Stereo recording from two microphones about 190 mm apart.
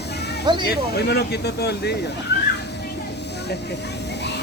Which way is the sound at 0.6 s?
60° left (ahead or behind).